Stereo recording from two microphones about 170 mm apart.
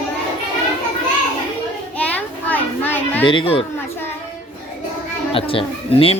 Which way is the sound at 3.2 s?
30° left (ahead or behind).